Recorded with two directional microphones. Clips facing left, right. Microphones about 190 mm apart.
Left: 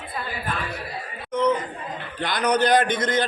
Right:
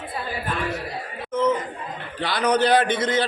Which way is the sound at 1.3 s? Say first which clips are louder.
Even; 5° right (ahead or behind).